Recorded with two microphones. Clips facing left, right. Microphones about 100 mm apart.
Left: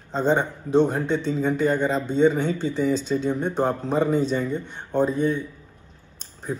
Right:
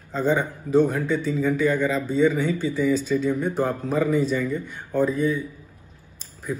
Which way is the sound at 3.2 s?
30° left (ahead or behind).